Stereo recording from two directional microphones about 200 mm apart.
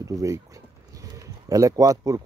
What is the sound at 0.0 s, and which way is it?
Speech, 15° right (ahead or behind).